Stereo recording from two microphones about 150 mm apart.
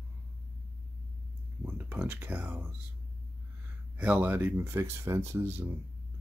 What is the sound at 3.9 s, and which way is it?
Speech, 10° right (ahead or behind).